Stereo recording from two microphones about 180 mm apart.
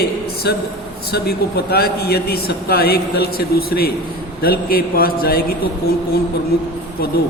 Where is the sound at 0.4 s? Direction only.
65° left (ahead or behind).